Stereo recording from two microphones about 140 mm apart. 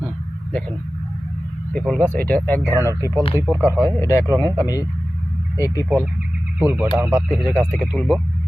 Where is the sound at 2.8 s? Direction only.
20° left (ahead or behind).